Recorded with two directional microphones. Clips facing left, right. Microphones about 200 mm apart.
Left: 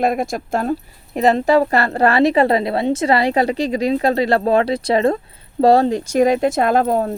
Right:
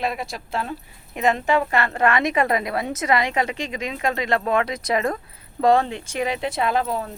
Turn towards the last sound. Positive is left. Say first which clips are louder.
# left 7 dB
turn(degrees=45)  # may be behind; listen again after turning